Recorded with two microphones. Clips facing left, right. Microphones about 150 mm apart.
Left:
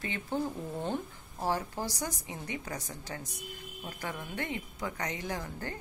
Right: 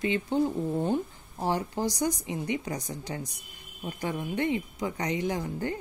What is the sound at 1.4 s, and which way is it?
Speech, 20° right (ahead or behind).